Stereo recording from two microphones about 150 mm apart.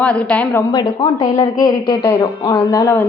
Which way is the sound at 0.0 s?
10° left (ahead or behind).